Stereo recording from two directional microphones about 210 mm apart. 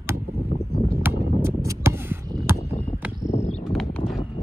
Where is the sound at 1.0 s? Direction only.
10° right (ahead or behind).